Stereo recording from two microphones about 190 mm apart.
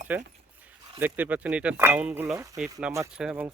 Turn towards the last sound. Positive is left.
turn(degrees=-5)  # may be behind; listen again after turning